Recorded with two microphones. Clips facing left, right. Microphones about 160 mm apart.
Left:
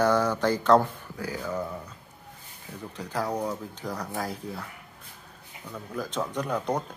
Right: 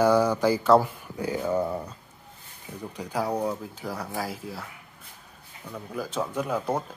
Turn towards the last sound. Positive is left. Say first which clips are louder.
# right 1 dB
turn(degrees=-5)  # may be behind; listen again after turning